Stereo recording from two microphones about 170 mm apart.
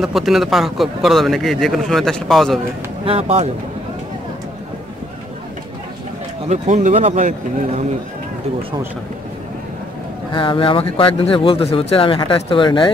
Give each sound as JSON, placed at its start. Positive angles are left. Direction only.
{"t": 0.0, "sound": "a man's voice", "side_deg": 0}
{"t": 3.1, "sound": "speech", "side_deg": -35}
{"t": 6.5, "sound": "speech", "side_deg": -45}
{"t": 10.3, "sound": "speech", "side_deg": 30}